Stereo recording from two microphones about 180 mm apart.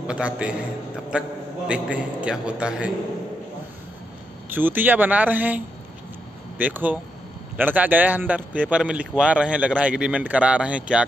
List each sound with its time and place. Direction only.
0.0 s speech: 5° right (ahead or behind)
1.7 s speech: 5° right (ahead or behind)
4.5 s speech: 10° right (ahead or behind)
6.6 s speech: 10° right (ahead or behind)